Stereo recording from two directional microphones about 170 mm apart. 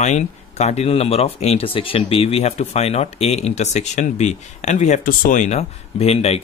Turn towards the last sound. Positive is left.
turn(degrees=35)  # may be behind; listen again after turning